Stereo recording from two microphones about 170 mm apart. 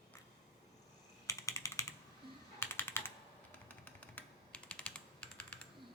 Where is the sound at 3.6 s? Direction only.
10° left (ahead or behind).